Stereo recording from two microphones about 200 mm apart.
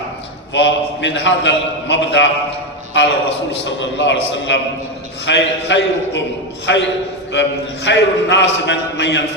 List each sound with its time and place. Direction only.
0.5 s a man's voice: 60° left (ahead or behind)